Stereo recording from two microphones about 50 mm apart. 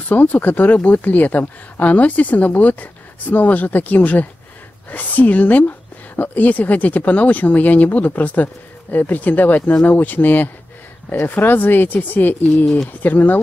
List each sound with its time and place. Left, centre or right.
0.1 s a woman's voice: left